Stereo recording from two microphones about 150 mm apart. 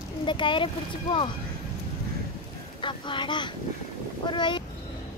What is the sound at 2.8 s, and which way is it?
Speech, 35° left (ahead or behind).